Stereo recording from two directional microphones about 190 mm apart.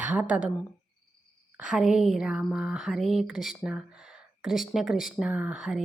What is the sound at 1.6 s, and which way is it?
Speech, 5° right (ahead or behind).